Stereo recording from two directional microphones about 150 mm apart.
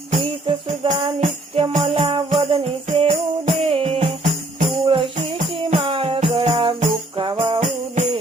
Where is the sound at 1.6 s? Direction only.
40° right (ahead or behind).